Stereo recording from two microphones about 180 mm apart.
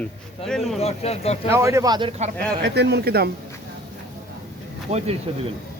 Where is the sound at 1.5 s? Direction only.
15° right (ahead or behind).